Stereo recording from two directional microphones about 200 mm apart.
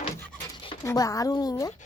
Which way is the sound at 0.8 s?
15° left (ahead or behind).